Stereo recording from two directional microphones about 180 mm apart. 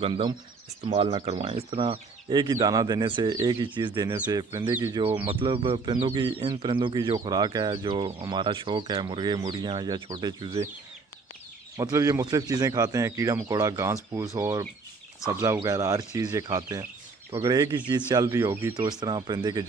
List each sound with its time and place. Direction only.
0.0 s speech: 25° right (ahead or behind)
5.3 s speech: 30° right (ahead or behind)
11.7 s speech: 20° right (ahead or behind)